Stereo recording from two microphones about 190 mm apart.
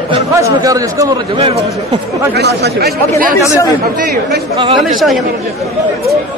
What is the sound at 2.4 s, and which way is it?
Speech, 60° right (ahead or behind).